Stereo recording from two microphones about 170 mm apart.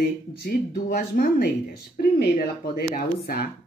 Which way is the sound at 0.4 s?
60° left (ahead or behind).